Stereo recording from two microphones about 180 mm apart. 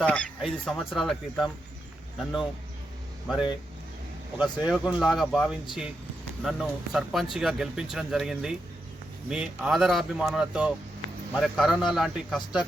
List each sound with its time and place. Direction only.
0.0 s speech: 5° left (ahead or behind)